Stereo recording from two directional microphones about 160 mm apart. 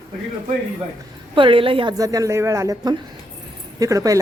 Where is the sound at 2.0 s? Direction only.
20° right (ahead or behind).